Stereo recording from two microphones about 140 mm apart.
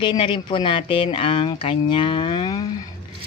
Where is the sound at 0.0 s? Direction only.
35° left (ahead or behind).